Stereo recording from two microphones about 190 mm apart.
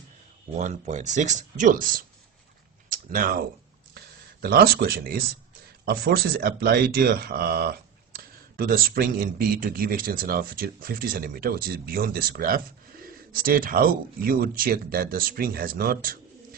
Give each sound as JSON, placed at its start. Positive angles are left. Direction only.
{"t": 0.6, "sound": "speech", "side_deg": -40}
{"t": 2.9, "sound": "typing", "side_deg": -45}
{"t": 3.9, "sound": "speech", "side_deg": -55}